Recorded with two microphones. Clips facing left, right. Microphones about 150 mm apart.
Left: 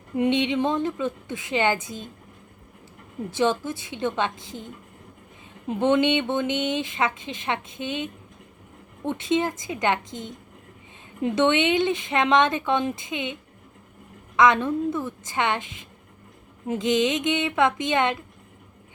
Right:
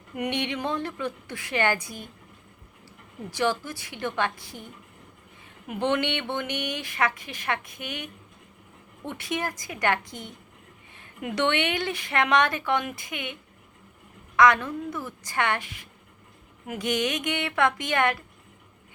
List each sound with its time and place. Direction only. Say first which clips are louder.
0.2 s speech: left 7 dB; 20° left (ahead or behind)
3.2 s speech: left 3 dB; 20° left (ahead or behind)
14.3 s speech: left 1 dB; 20° left (ahead or behind)